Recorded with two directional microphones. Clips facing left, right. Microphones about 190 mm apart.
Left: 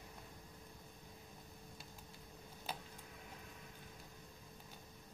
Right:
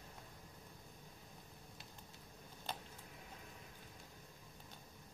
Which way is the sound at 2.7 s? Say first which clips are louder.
Even; 10° left (ahead or behind).